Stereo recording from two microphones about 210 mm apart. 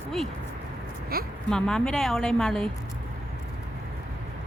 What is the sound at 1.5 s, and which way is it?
A woman's voice, 5° left (ahead or behind).